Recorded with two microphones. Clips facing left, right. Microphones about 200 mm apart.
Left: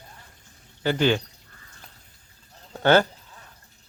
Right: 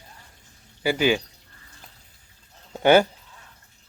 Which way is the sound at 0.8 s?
10° right (ahead or behind).